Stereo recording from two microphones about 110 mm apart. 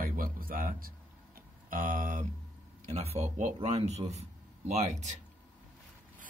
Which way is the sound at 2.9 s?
65° right (ahead or behind).